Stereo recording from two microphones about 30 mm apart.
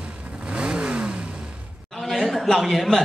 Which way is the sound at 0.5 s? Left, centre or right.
Right.